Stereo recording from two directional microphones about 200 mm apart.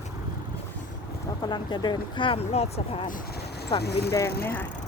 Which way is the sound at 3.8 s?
55° left (ahead or behind).